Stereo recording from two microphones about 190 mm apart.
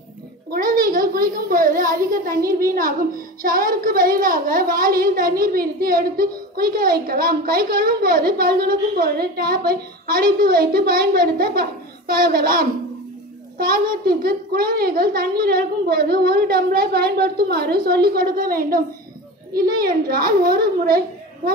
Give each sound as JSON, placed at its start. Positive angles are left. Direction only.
{"t": 0.5, "sound": "a child's voice", "side_deg": -50}